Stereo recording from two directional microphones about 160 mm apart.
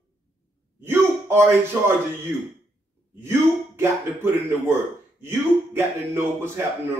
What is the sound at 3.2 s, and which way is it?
Speech, 15° right (ahead or behind).